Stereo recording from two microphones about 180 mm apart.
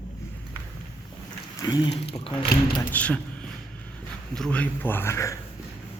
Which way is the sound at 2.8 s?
10° left (ahead or behind).